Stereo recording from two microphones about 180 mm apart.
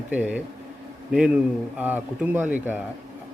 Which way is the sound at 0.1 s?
10° right (ahead or behind).